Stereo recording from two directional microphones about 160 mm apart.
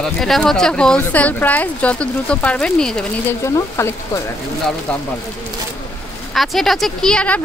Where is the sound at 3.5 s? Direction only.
15° left (ahead or behind).